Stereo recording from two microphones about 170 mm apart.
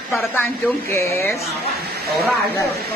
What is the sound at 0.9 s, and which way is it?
Speech, 15° left (ahead or behind).